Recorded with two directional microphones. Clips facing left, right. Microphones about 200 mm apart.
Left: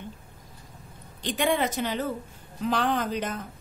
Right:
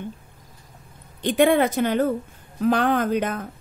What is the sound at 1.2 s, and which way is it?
A woman's voice, 55° right (ahead or behind).